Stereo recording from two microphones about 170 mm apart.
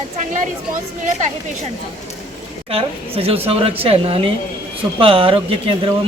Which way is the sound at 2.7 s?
35° right (ahead or behind).